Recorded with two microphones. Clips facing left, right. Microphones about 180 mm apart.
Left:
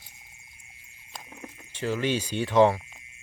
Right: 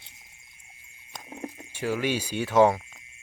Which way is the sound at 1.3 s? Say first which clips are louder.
Right 9 dB; 30° right (ahead or behind).